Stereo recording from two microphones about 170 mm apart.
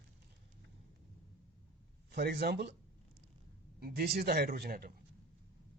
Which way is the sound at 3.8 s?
65° right (ahead or behind).